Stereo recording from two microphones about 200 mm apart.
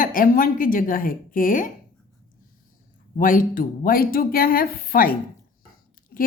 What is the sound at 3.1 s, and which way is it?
A woman's voice, 45° left (ahead or behind).